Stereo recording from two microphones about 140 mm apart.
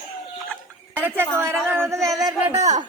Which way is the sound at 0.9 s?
15° right (ahead or behind).